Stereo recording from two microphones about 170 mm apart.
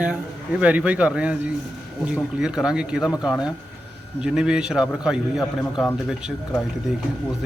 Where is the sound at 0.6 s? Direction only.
10° right (ahead or behind).